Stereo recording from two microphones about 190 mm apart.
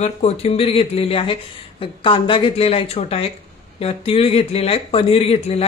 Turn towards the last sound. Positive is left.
turn(degrees=30)  # may be behind; listen again after turning